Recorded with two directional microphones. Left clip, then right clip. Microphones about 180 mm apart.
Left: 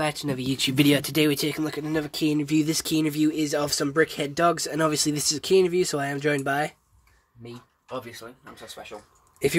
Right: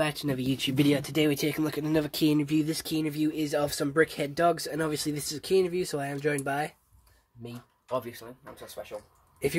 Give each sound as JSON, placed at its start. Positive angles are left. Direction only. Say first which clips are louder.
{"t": 0.0, "sound": "speech", "louder": "left 2 dB", "side_deg": 5}
{"t": 1.3, "sound": "speech", "louder": "left 3 dB", "side_deg": 5}
{"t": 1.6, "sound": "speech", "louder": "even", "side_deg": -15}
{"t": 2.6, "sound": "speech", "louder": "left 5 dB", "side_deg": 30}
{"t": 7.9, "sound": "speech", "louder": "right 2 dB", "side_deg": -30}